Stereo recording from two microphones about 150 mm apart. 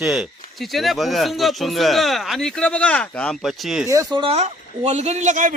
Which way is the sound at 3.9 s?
20° right (ahead or behind).